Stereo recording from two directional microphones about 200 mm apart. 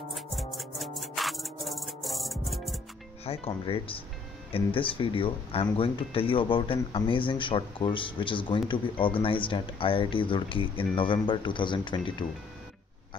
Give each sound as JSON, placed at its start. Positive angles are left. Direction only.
{"t": 0.1, "sound": "music", "side_deg": 0}
{"t": 3.3, "sound": "speech", "side_deg": 30}